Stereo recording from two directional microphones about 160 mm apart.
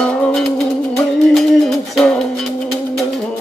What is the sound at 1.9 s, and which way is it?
Music, centre (ahead or behind).